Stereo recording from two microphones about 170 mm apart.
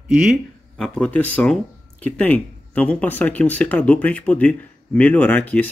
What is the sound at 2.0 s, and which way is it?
Speech, 10° left (ahead or behind).